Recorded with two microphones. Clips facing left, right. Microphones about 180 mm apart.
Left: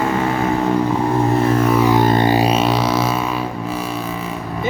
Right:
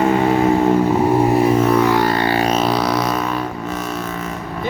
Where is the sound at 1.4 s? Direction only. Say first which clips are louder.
Right 2 dB; 5° right (ahead or behind).